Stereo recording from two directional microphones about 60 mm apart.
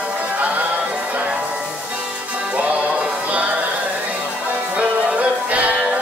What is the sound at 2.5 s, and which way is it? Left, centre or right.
Music, right.